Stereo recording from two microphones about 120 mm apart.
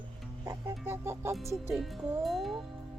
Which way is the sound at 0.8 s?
20° right (ahead or behind).